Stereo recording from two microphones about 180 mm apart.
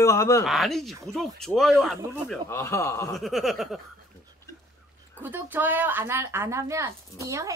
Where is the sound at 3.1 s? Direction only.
Centre (ahead or behind).